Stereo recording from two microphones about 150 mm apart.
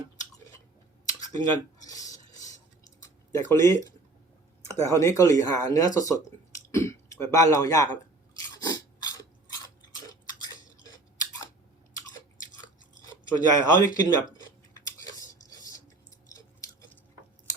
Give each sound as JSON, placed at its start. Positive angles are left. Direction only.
{"t": 1.2, "sound": "cutlery", "side_deg": 25}
{"t": 2.1, "sound": "stir", "side_deg": 55}
{"t": 3.3, "sound": "speech", "side_deg": 20}
{"t": 4.7, "sound": "speech", "side_deg": 20}
{"t": 8.4, "sound": "chewing", "side_deg": 25}
{"t": 13.5, "sound": "scissors", "side_deg": 25}